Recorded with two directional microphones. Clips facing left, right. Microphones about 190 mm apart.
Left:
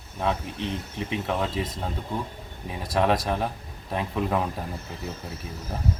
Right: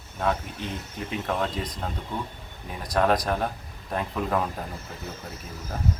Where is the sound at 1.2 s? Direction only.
5° left (ahead or behind).